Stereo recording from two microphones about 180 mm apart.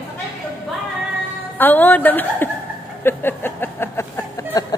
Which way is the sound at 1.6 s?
10° left (ahead or behind).